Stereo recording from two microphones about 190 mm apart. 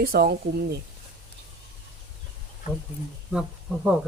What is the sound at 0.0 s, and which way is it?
Speech, 55° right (ahead or behind).